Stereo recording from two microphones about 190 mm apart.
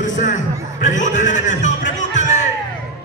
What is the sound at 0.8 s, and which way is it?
Music, 40° left (ahead or behind).